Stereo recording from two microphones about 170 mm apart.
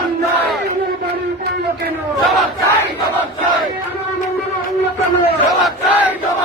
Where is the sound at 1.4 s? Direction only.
70° right (ahead or behind).